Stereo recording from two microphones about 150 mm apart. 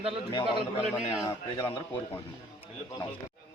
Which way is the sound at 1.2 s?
25° left (ahead or behind).